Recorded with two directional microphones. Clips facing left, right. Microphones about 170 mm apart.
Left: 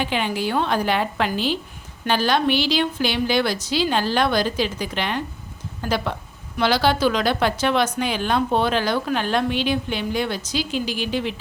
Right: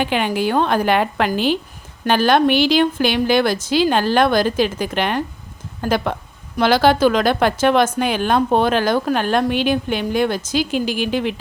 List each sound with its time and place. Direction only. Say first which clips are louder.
0.0 s speech: right 4 dB; 55° right (ahead or behind)